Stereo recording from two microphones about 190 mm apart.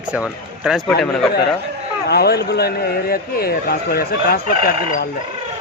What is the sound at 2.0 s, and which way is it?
A man's voice, 55° left (ahead or behind).